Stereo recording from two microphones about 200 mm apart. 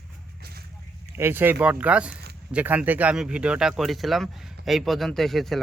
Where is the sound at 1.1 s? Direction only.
10° right (ahead or behind).